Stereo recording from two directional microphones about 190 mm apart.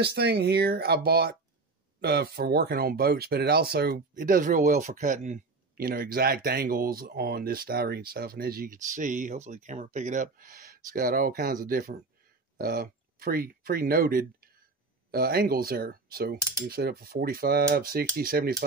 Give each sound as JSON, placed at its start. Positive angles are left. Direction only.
{"t": 0.0, "sound": "speech", "side_deg": -60}